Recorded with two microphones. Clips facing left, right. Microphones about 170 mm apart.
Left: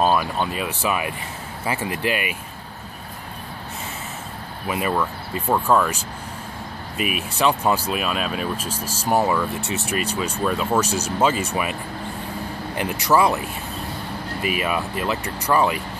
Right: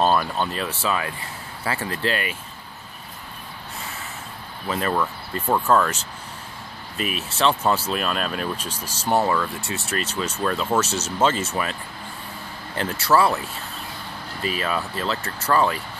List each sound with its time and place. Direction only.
0.0 s speech: 10° left (ahead or behind)
4.6 s speech: 10° left (ahead or behind)
7.0 s speech: 10° left (ahead or behind)
12.7 s speech: 15° left (ahead or behind)
14.4 s speech: 10° left (ahead or behind)